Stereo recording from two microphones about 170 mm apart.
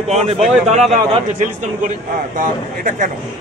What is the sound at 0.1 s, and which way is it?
A man's voice, 40° right (ahead or behind).